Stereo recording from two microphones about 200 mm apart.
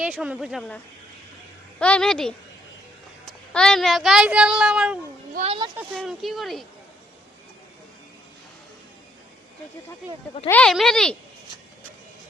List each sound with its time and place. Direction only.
0.0 s speech: 5° right (ahead or behind)
1.8 s speech: 5° left (ahead or behind)
5.3 s speech: 35° right (ahead or behind)
6.0 s speech: centre (ahead or behind)
10.5 s speech: 5° left (ahead or behind)